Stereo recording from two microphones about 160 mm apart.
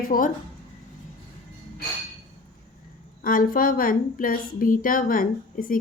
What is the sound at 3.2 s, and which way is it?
A woman's voice, 60° left (ahead or behind).